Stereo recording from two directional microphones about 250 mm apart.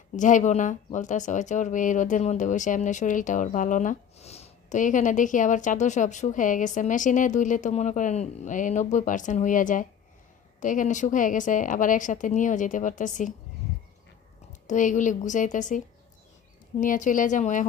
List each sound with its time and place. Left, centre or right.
0.2 s a woman's voice: left
14.7 s a woman's voice: left
16.8 s a woman's voice: left